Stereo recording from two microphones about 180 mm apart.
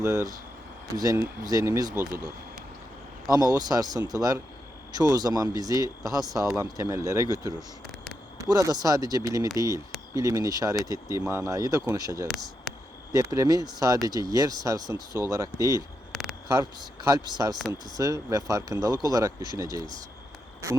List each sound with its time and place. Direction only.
0.0 s speech: 15° right (ahead or behind)
3.7 s speech: 20° right (ahead or behind)
8.4 s speech: 20° right (ahead or behind)
16.1 s a sound: centre (ahead or behind)
16.5 s speech: 20° right (ahead or behind)